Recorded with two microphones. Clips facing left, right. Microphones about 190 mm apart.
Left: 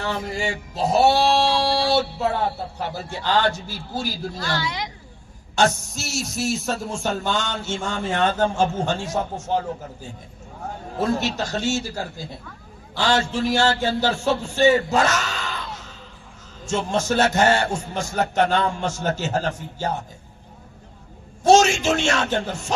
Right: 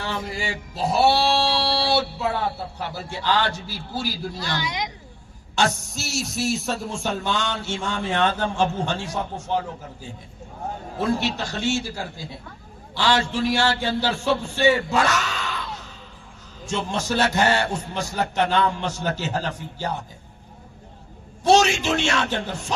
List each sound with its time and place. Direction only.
0.0 s male singing: 45° left (ahead or behind)
4.4 s a woman's voice: 20° right (ahead or behind)
5.7 s music: centre (ahead or behind)
7.9 s male singing: 45° left (ahead or behind)
15.1 s a sound: centre (ahead or behind)
16.6 s male singing: 45° left (ahead or behind)
21.4 s male singing: 45° left (ahead or behind)